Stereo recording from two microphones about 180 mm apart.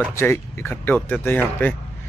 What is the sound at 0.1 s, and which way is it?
Speech, 15° left (ahead or behind).